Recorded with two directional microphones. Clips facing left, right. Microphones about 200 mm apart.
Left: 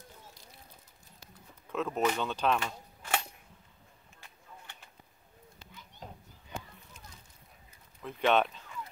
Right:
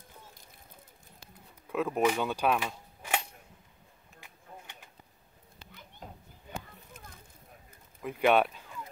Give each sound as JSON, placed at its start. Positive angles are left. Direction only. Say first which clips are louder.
{"t": 1.7, "sound": "speech", "louder": "right 3 dB", "side_deg": -10}
{"t": 6.5, "sound": "a sound", "louder": "right 1 dB", "side_deg": -55}
{"t": 8.0, "sound": "speech", "louder": "right 2 dB", "side_deg": -10}